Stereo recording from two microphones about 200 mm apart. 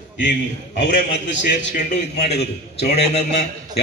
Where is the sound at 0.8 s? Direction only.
65° left (ahead or behind).